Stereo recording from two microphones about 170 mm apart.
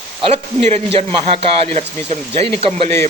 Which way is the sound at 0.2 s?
35° right (ahead or behind).